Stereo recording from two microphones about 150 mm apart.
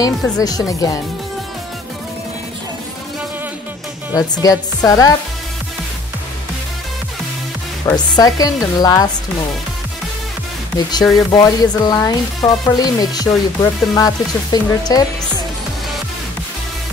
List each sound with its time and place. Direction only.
0.0 s speech: 25° left (ahead or behind)
4.1 s speech: 25° left (ahead or behind)
7.8 s speech: 25° left (ahead or behind)
10.9 s speech: 25° left (ahead or behind)